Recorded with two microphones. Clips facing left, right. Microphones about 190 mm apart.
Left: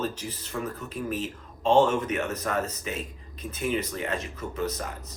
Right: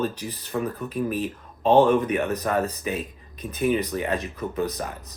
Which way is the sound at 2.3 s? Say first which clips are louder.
Right 5 dB; 15° right (ahead or behind).